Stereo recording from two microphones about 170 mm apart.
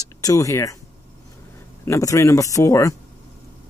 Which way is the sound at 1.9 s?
20° left (ahead or behind).